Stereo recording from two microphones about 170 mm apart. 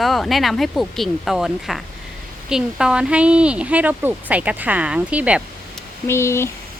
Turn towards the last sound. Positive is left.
turn(degrees=15)  # may be behind; listen again after turning